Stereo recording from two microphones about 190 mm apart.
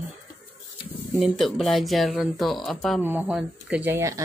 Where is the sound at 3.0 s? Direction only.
10° right (ahead or behind).